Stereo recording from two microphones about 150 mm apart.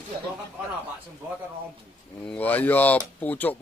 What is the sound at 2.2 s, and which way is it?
Speech, 10° left (ahead or behind).